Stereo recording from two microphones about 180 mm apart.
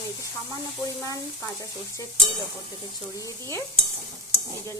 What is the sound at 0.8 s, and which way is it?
Speech, 20° left (ahead or behind).